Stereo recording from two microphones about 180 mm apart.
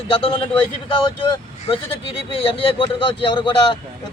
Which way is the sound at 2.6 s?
30° left (ahead or behind).